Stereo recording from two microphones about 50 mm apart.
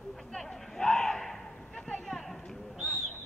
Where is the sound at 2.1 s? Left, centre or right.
Centre.